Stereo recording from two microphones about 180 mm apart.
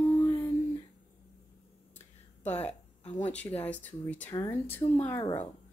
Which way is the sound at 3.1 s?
10° left (ahead or behind).